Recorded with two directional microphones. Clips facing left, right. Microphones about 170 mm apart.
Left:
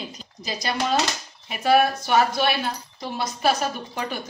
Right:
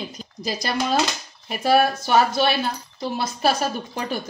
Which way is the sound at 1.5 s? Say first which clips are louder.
Right 1 dB; 35° right (ahead or behind).